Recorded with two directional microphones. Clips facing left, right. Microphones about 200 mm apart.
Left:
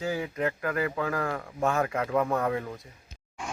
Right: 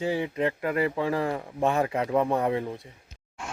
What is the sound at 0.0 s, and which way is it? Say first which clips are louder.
Speech: right 3 dB; 30° right (ahead or behind).